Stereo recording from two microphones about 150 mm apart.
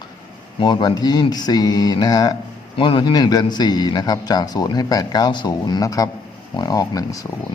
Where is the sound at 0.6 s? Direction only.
30° left (ahead or behind).